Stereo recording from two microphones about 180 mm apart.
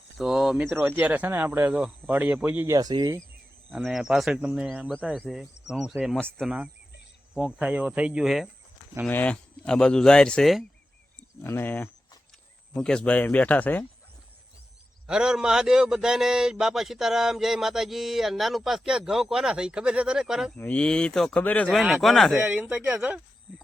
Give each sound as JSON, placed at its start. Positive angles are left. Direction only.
{"t": 0.2, "sound": "speech", "side_deg": 0}
{"t": 3.7, "sound": "a man's voice", "side_deg": 0}
{"t": 15.0, "sound": "a man's voice", "side_deg": -5}